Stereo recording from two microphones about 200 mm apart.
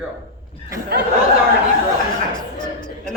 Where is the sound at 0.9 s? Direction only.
50° right (ahead or behind).